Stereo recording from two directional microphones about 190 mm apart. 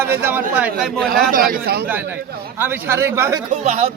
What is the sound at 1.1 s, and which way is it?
Speech, 50° right (ahead or behind).